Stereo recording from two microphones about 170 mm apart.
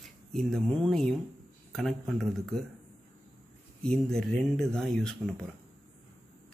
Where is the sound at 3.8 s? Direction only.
5° left (ahead or behind).